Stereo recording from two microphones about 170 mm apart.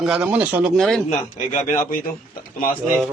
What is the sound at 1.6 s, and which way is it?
Speech, 50° left (ahead or behind).